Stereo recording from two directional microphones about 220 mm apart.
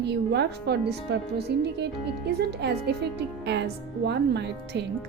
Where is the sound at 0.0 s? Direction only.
50° right (ahead or behind).